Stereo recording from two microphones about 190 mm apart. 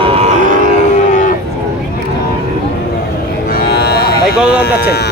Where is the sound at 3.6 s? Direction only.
55° left (ahead or behind).